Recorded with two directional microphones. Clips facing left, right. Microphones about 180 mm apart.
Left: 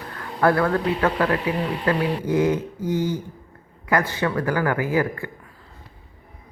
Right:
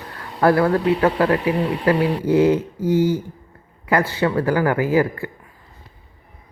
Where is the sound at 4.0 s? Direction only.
25° right (ahead or behind).